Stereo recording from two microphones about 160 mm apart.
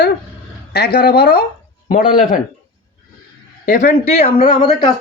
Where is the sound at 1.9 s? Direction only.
60° left (ahead or behind).